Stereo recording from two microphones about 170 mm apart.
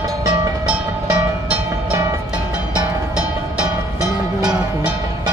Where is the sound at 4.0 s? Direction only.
5° right (ahead or behind).